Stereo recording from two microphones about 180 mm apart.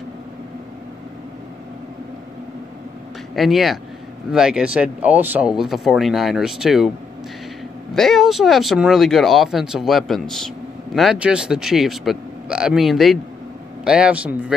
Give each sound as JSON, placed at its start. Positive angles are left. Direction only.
{"t": 3.3, "sound": "speech", "side_deg": 0}
{"t": 7.9, "sound": "speech", "side_deg": 0}